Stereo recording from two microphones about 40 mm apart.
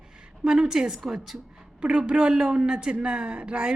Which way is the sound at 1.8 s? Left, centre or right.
Right.